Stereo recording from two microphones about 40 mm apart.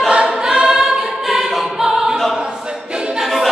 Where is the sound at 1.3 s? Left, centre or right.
Centre.